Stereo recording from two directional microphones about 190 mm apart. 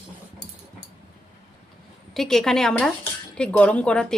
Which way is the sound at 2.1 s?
Centre (ahead or behind).